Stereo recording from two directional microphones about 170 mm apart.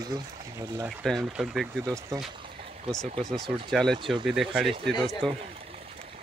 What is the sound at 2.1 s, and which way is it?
Speech, 20° right (ahead or behind).